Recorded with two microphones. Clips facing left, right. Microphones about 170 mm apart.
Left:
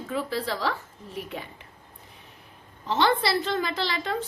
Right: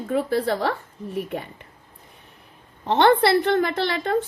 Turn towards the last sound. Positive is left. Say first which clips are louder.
# right 6 dB
turn(degrees=-55)  # may be behind; listen again after turning